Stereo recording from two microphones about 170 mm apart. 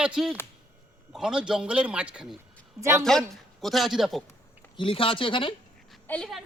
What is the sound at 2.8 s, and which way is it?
Speech, 15° right (ahead or behind).